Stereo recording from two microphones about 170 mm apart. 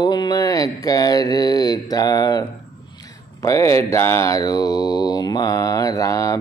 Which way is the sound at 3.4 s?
20° left (ahead or behind).